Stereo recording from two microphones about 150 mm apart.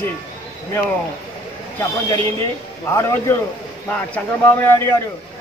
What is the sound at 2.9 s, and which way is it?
A man's voice, 20° left (ahead or behind).